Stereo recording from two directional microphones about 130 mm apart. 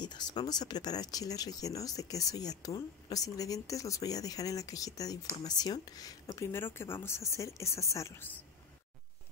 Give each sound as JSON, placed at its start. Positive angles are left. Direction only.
{"t": 0.0, "sound": "speech", "side_deg": 35}